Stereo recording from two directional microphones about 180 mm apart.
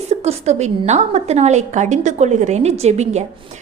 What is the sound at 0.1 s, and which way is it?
A woman's voice, 35° right (ahead or behind).